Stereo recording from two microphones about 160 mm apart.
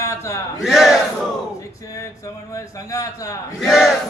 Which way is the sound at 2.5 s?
20° left (ahead or behind).